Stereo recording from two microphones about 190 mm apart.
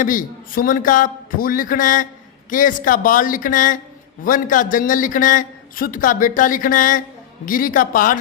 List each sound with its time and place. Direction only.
0.0 s a man's voice: 45° left (ahead or behind)